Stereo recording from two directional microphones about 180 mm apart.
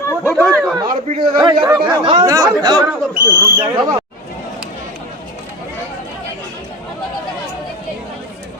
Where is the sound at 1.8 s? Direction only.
25° right (ahead or behind).